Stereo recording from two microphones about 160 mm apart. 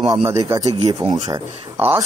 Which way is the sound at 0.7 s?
40° right (ahead or behind).